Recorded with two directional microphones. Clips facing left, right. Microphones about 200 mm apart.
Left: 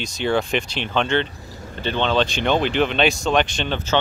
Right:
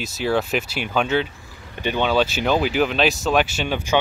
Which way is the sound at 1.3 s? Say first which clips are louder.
Left 6 dB; 40° left (ahead or behind).